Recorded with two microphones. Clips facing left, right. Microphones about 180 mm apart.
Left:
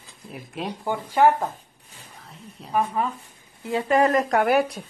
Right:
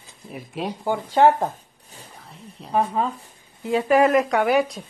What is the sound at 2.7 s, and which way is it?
A woman's voice, 20° right (ahead or behind).